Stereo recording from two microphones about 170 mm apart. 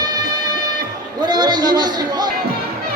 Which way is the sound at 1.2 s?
25° right (ahead or behind).